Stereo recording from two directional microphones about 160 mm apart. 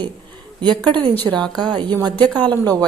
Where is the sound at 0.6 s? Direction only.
30° right (ahead or behind).